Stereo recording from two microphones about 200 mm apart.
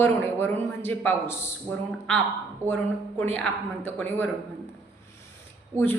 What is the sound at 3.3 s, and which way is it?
Speech, 10° left (ahead or behind).